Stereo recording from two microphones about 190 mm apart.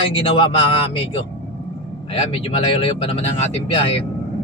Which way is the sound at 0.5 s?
30° left (ahead or behind).